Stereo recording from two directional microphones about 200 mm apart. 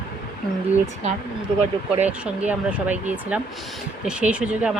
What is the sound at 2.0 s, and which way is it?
Speech, 5° right (ahead or behind).